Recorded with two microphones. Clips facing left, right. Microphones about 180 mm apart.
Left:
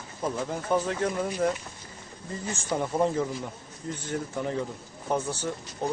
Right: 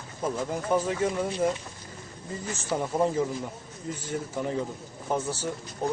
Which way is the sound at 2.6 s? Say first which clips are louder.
Even; 5° right (ahead or behind).